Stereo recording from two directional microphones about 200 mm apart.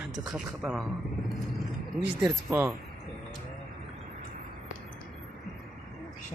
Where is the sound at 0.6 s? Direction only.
5° right (ahead or behind).